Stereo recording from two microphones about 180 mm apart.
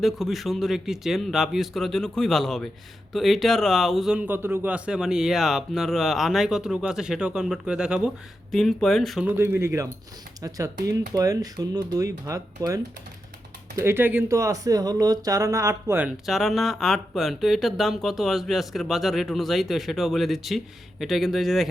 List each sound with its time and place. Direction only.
0.0 s speech: centre (ahead or behind)
9.2 s speech: 10° right (ahead or behind)
11.1 s speech: 20° right (ahead or behind); by 21.7 s centre (ahead or behind)